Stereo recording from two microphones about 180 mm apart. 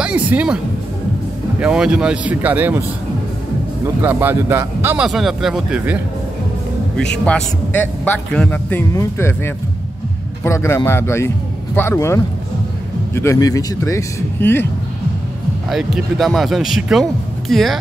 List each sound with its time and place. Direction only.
0.0 s speech: 5° right (ahead or behind)
1.6 s a man's voice: 5° right (ahead or behind)
4.0 s a man's voice: 10° right (ahead or behind)
7.1 s a man's voice: 5° left (ahead or behind)
15.7 s speech: centre (ahead or behind)